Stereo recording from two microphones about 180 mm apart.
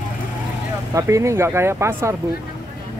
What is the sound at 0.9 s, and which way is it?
Speech, 15° right (ahead or behind).